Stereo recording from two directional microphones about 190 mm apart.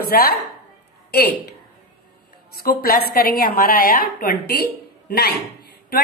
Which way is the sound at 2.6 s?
50° left (ahead or behind).